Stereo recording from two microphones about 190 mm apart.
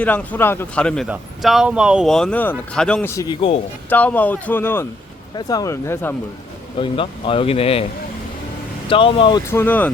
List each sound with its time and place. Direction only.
0.0 s speech: 10° left (ahead or behind)
6.7 s speech: 25° left (ahead or behind)
8.9 s speech: 25° left (ahead or behind)
9.5 s speech: 10° left (ahead or behind)